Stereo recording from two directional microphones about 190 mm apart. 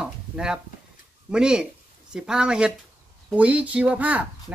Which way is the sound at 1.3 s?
5° right (ahead or behind).